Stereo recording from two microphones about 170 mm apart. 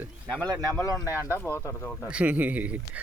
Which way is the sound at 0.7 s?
10° left (ahead or behind).